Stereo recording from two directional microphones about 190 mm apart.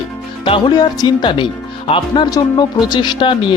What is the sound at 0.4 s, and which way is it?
Speech, 25° left (ahead or behind).